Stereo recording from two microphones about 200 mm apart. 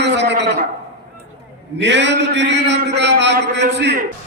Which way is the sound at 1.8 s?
60° right (ahead or behind).